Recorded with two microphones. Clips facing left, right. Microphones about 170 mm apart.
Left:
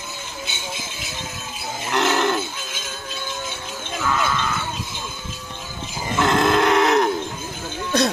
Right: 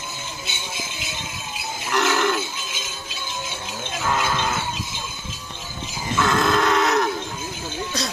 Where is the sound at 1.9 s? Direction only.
25° left (ahead or behind).